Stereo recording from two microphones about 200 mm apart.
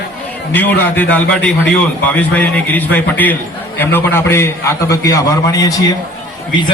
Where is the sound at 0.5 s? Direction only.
10° left (ahead or behind).